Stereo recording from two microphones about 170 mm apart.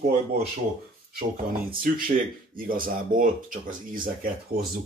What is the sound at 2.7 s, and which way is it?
Speech, 55° right (ahead or behind).